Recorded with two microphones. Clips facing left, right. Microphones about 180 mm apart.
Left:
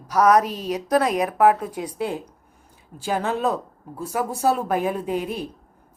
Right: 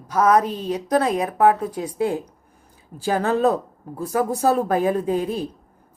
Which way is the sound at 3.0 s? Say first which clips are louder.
Right 4 dB; 40° right (ahead or behind).